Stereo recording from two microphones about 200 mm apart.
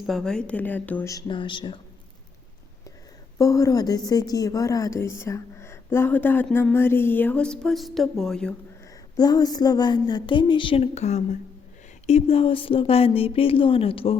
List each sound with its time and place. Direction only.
0.0 s a woman's voice: centre (ahead or behind); by 1.8 s 25° left (ahead or behind)
3.3 s a woman's voice: 15° left (ahead or behind)
9.1 s speech: 20° left (ahead or behind)